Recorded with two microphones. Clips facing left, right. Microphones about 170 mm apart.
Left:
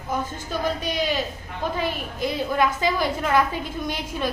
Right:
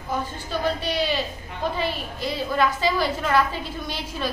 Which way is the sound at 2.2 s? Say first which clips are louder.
Left 1 dB; 15° left (ahead or behind).